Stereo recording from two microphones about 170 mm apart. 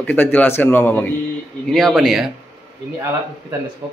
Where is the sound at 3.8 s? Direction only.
10° right (ahead or behind).